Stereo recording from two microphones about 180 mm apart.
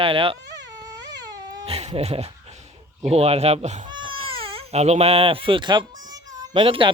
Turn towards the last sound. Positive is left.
turn(degrees=-30)  # may be behind; listen again after turning